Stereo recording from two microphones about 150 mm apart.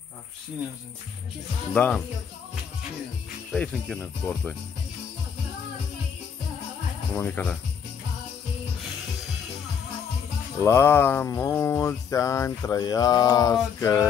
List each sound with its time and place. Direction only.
1.7 s speech: 10° left (ahead or behind)
3.5 s speech: 5° left (ahead or behind)
7.2 s speech: 10° left (ahead or behind)
10.6 s music: 15° left (ahead or behind)